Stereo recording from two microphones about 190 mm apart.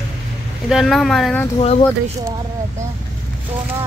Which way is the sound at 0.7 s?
Centre (ahead or behind).